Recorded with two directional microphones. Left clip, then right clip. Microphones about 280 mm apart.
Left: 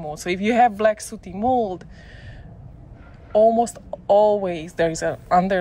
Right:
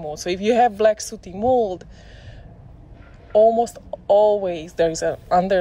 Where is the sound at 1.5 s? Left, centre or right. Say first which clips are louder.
Right 2 dB; centre.